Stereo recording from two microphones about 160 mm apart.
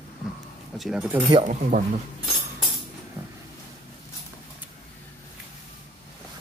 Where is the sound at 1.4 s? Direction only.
50° right (ahead or behind).